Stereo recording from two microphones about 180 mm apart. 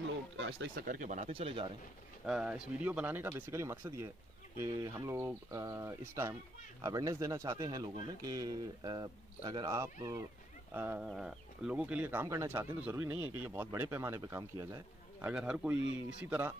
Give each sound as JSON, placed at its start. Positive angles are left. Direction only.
{"t": 0.7, "sound": "speech", "side_deg": -50}
{"t": 2.2, "sound": "speech", "side_deg": -5}
{"t": 15.2, "sound": "speech", "side_deg": -5}